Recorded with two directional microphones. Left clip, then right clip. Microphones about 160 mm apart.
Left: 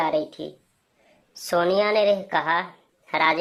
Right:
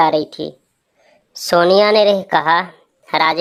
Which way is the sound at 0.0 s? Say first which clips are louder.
Right 9 dB; 45° right (ahead or behind).